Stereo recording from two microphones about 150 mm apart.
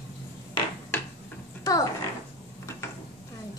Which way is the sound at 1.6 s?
25° left (ahead or behind).